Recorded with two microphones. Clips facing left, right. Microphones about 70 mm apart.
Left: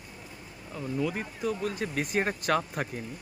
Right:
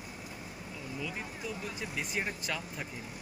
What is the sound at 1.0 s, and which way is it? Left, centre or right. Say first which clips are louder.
Speech: left 8 dB; left.